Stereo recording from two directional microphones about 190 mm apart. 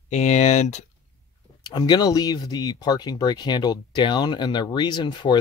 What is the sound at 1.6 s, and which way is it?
Speech, 20° left (ahead or behind).